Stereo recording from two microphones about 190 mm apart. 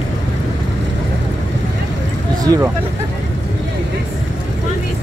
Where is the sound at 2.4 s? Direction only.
20° right (ahead or behind).